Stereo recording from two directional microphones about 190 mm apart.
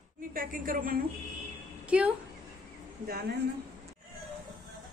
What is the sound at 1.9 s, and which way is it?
Speech, 5° right (ahead or behind).